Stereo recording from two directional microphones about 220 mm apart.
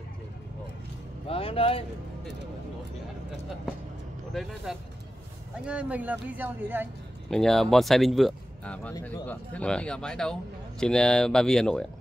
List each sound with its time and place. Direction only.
1.2 s speech: 25° left (ahead or behind)
4.3 s speech: centre (ahead or behind)
7.2 s speech: centre (ahead or behind)